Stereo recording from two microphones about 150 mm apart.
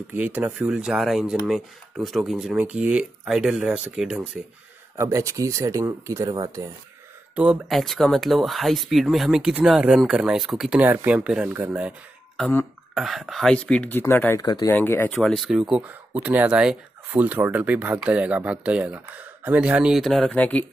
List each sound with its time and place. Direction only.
0.1 s speech: 10° right (ahead or behind)
4.9 s speech: 20° right (ahead or behind)
7.3 s speech: 5° right (ahead or behind)
12.4 s speech: 10° left (ahead or behind)
12.9 s speech: centre (ahead or behind)
15.1 s speech: centre (ahead or behind)